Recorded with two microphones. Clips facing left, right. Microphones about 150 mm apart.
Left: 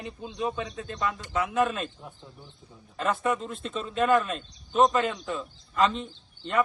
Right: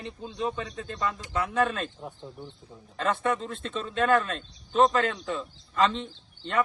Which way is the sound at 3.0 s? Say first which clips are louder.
Even; 5° left (ahead or behind).